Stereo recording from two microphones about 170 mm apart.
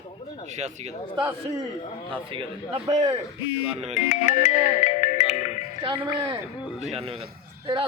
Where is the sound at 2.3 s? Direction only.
30° right (ahead or behind).